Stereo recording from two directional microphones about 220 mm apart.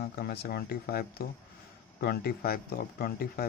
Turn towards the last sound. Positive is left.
turn(degrees=45)  # may be behind; listen again after turning